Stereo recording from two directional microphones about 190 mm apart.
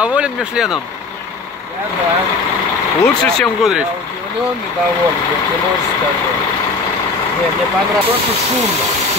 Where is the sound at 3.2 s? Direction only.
Centre (ahead or behind).